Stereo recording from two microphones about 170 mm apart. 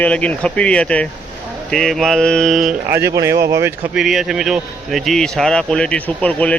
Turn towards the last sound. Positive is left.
turn(degrees=5)  # may be behind; listen again after turning